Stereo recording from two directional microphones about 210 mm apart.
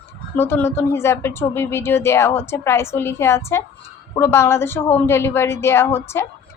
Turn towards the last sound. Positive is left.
turn(degrees=10)  # may be behind; listen again after turning